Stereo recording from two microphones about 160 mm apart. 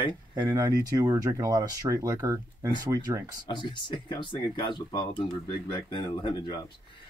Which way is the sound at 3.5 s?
30° left (ahead or behind).